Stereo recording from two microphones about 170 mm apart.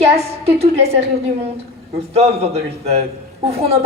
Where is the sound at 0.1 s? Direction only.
35° right (ahead or behind).